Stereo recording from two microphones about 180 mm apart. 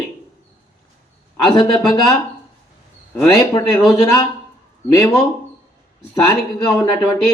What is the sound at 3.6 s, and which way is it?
Speech, 20° left (ahead or behind).